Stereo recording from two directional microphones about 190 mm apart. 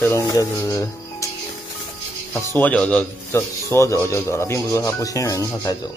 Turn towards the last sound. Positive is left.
turn(degrees=15)  # may be behind; listen again after turning